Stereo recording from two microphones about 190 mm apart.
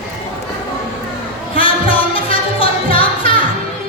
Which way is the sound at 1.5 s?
30° left (ahead or behind).